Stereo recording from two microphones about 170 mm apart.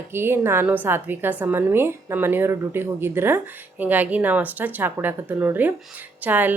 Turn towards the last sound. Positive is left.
turn(degrees=-10)  # may be behind; listen again after turning